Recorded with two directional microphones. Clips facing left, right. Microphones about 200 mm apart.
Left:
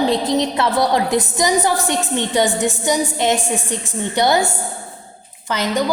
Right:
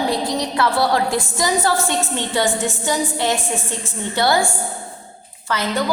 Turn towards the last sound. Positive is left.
turn(degrees=15)  # may be behind; listen again after turning